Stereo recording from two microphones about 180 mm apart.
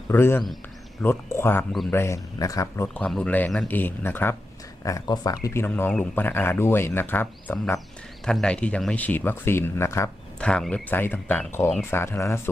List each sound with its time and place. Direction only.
0.1 s speech: 10° left (ahead or behind)